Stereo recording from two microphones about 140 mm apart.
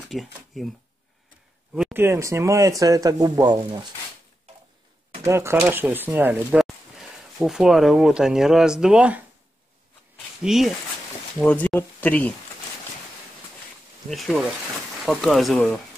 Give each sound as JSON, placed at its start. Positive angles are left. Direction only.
{"t": 0.1, "sound": "speech", "side_deg": 0}
{"t": 2.0, "sound": "speech", "side_deg": -20}
{"t": 5.2, "sound": "speech", "side_deg": -20}
{"t": 6.6, "sound": "speech", "side_deg": 0}
{"t": 10.4, "sound": "speech", "side_deg": 0}
{"t": 11.3, "sound": "speech", "side_deg": 10}
{"t": 14.1, "sound": "speech", "side_deg": 0}